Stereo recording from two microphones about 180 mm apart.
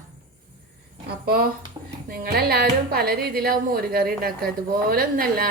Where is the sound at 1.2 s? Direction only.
55° right (ahead or behind).